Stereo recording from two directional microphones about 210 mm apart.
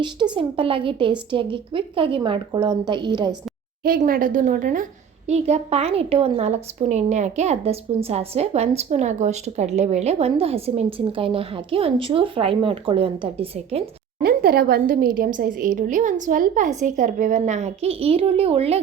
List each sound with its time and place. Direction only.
0.3 s a woman's voice: 25° right (ahead or behind)
3.8 s a woman's voice: 45° right (ahead or behind); by 13.8 s 25° right (ahead or behind)
14.2 s a woman's voice: 45° right (ahead or behind); by 18.8 s 30° right (ahead or behind)